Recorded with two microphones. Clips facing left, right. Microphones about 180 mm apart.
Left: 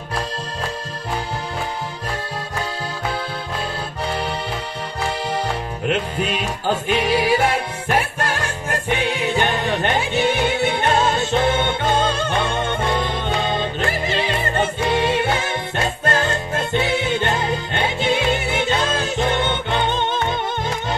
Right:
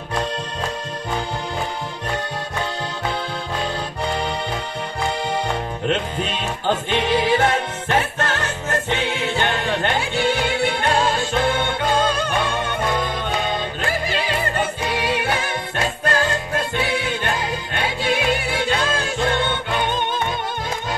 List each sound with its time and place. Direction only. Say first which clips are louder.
5.9 s music: left 2 dB; 10° left (ahead or behind)